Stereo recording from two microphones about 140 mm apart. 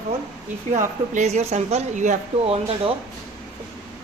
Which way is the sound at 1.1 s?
55° right (ahead or behind).